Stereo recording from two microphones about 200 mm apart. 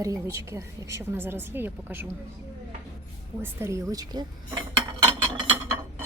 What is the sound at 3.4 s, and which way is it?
Speech, 15° right (ahead or behind).